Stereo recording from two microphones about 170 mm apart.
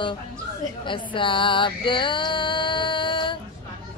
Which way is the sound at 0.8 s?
30° left (ahead or behind).